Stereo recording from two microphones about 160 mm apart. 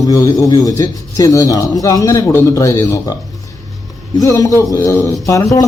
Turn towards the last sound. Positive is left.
turn(degrees=20)  # may be behind; listen again after turning